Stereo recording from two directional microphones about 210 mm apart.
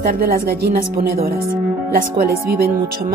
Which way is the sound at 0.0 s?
45° right (ahead or behind).